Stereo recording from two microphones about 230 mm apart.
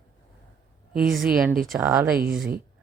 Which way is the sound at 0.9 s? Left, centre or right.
Right.